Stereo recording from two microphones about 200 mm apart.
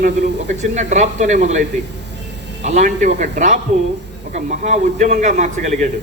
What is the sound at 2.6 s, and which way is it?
Speech, 35° right (ahead or behind).